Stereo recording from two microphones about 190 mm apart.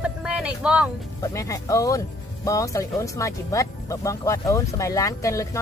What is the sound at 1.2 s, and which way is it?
Speech, 15° left (ahead or behind).